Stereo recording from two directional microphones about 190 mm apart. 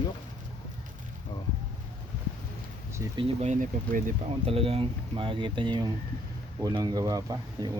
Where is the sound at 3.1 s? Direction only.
35° right (ahead or behind).